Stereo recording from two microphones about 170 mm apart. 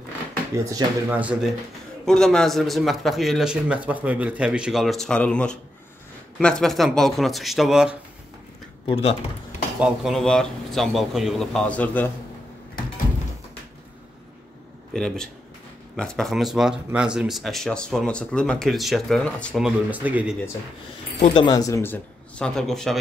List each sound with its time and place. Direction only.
0.8 s speech: 25° right (ahead or behind)
1.1 s speech: 5° right (ahead or behind)
2.0 s speech: 5° left (ahead or behind)
8.8 s speech: 30° left (ahead or behind)
9.8 s speech: 5° right (ahead or behind)
14.9 s speech: 5° left (ahead or behind)
21.2 s speech: 30° left (ahead or behind); by 22.9 s centre (ahead or behind)